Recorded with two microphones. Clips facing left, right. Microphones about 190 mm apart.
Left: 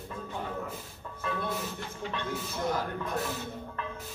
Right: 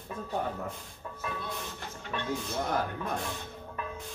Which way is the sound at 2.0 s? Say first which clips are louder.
Left 1 dB; 50° right (ahead or behind).